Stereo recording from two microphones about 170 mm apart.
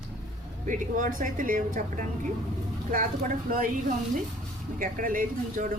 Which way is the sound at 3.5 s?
55° right (ahead or behind).